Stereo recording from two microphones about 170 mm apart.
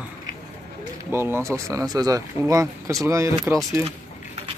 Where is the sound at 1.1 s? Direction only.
15° right (ahead or behind).